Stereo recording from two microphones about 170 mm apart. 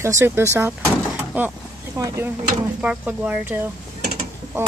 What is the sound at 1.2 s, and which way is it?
Vehicle, 10° right (ahead or behind).